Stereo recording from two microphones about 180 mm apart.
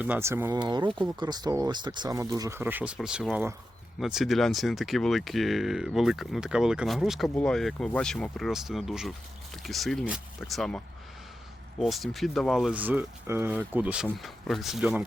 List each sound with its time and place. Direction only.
0.0 s speech: 10° right (ahead or behind)